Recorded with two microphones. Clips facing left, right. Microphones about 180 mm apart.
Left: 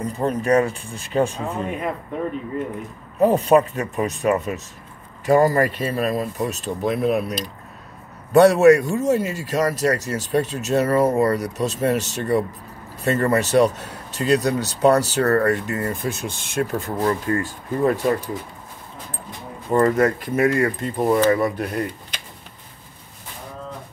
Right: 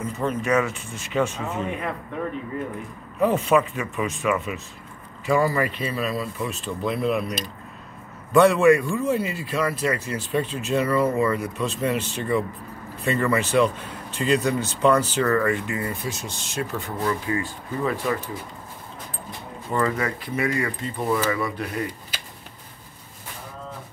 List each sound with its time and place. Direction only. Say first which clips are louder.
0.0 s speech: left 3 dB; 35° left (ahead or behind)
3.2 s speech: left 4 dB; 35° left (ahead or behind)
8.3 s speech: left 4 dB; 40° left (ahead or behind)
19.7 s speech: left 7 dB; 45° left (ahead or behind)
22.1 s a sound: left 1 dB; 5° right (ahead or behind)